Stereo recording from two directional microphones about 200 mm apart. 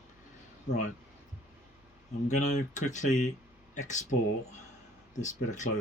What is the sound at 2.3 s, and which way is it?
Speech, 35° left (ahead or behind).